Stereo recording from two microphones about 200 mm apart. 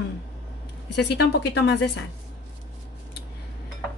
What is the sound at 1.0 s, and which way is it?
Speech, 55° left (ahead or behind).